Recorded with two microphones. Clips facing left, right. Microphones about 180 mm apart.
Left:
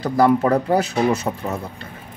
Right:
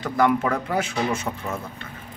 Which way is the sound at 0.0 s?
35° left (ahead or behind).